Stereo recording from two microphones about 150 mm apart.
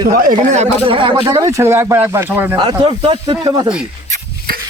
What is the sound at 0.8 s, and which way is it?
Speech, 35° right (ahead or behind).